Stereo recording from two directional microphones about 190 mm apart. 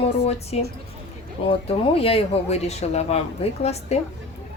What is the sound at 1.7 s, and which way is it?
Speech, 30° left (ahead or behind).